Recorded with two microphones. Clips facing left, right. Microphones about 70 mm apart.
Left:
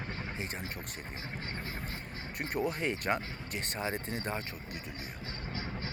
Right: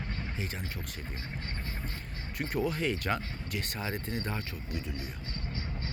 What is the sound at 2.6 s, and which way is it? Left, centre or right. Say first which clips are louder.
Speech: even; left.